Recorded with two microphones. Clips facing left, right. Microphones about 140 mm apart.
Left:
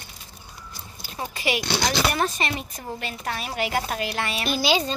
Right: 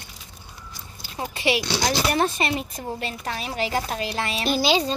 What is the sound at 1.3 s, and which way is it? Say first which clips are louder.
A woman's voice: right 2 dB; 30° right (ahead or behind).